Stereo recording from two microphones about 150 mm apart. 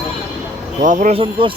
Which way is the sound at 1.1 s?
35° right (ahead or behind).